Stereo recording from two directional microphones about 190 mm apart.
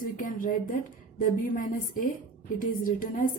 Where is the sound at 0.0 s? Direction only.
45° left (ahead or behind).